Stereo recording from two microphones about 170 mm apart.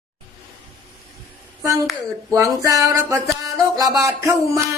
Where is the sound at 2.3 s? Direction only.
20° right (ahead or behind).